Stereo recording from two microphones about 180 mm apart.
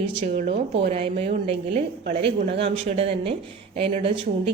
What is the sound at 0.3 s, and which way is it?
Speech, 65° right (ahead or behind).